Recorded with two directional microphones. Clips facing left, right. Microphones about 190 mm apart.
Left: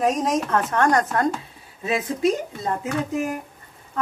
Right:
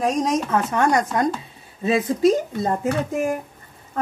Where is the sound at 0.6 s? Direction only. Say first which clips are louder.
Even; 10° right (ahead or behind).